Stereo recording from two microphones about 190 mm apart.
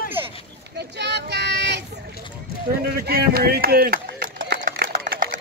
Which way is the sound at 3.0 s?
55° right (ahead or behind).